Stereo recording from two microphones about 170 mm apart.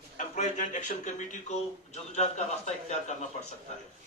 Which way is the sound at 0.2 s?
45° left (ahead or behind).